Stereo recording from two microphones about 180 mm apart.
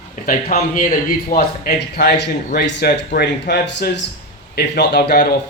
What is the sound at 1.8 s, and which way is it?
Speech, 65° left (ahead or behind).